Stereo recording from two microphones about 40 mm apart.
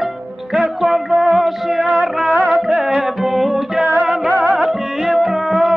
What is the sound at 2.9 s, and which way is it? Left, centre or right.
Music, centre.